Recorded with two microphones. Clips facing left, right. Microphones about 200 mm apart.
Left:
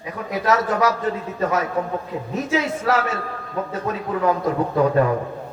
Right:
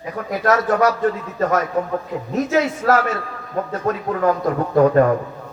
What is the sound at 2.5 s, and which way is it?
A man's voice, 50° right (ahead or behind).